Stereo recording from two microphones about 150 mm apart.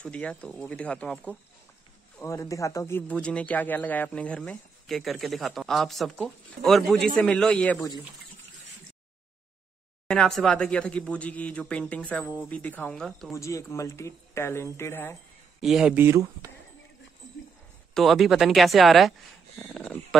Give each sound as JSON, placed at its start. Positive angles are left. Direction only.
{"t": 0.0, "sound": "speech", "side_deg": 10}
{"t": 2.2, "sound": "speech", "side_deg": 20}
{"t": 10.0, "sound": "speech", "side_deg": 5}
{"t": 13.3, "sound": "speech", "side_deg": 20}
{"t": 15.6, "sound": "speech", "side_deg": 0}
{"t": 15.9, "sound": "speech", "side_deg": -15}
{"t": 17.9, "sound": "speech", "side_deg": 0}